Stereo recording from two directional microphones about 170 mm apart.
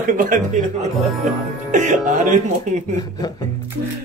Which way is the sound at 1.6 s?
45° right (ahead or behind).